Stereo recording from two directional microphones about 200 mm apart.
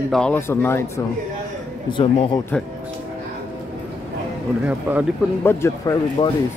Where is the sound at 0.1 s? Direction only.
5° left (ahead or behind).